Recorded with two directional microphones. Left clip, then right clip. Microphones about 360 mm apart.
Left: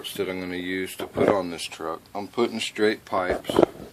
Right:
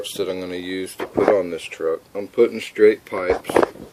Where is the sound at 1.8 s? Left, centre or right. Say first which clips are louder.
Right 11 dB; left.